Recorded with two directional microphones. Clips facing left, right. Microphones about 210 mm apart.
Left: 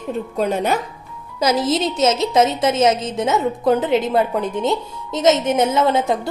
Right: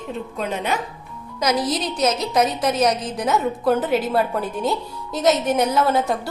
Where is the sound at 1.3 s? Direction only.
25° left (ahead or behind).